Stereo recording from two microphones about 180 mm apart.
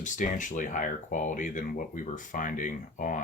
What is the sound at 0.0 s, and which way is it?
Speech, 45° left (ahead or behind).